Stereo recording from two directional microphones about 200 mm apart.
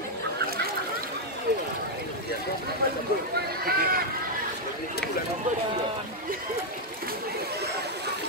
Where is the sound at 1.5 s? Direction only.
55° right (ahead or behind).